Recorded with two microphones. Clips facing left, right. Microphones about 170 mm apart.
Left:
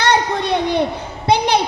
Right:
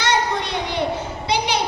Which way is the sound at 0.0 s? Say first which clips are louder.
Left 4 dB; 55° left (ahead or behind).